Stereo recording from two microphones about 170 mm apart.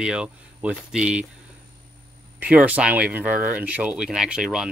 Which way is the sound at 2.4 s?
10° right (ahead or behind).